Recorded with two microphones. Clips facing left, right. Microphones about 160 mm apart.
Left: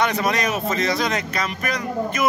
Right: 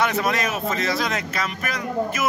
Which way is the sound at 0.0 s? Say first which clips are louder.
Left 1 dB; 5° right (ahead or behind).